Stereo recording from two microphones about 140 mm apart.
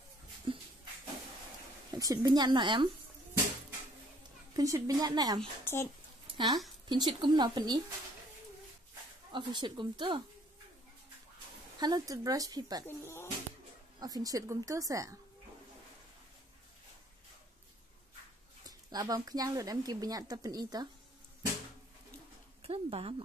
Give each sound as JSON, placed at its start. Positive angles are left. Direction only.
{"t": 0.5, "sound": "a sound", "side_deg": -40}
{"t": 1.9, "sound": "speech", "side_deg": -25}
{"t": 4.6, "sound": "speech", "side_deg": -25}
{"t": 5.7, "sound": "speech", "side_deg": 15}
{"t": 6.3, "sound": "speech", "side_deg": -25}
{"t": 9.3, "sound": "speech", "side_deg": -35}
{"t": 11.8, "sound": "speech", "side_deg": -25}
{"t": 12.8, "sound": "speech", "side_deg": 20}
{"t": 13.9, "sound": "speech", "side_deg": -25}
{"t": 18.7, "sound": "speech", "side_deg": -25}
{"t": 22.6, "sound": "speech", "side_deg": -45}